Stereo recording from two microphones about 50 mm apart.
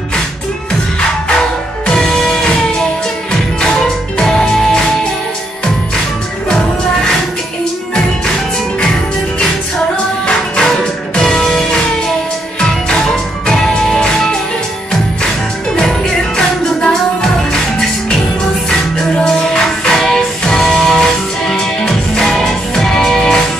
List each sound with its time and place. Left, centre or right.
1.9 s music: centre
3.6 s music: centre
10.2 s music: centre
13.6 s music: centre
15.2 s music: centre
18.7 s music: centre